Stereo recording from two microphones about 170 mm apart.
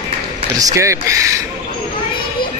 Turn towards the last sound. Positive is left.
turn(degrees=-20)  # may be behind; listen again after turning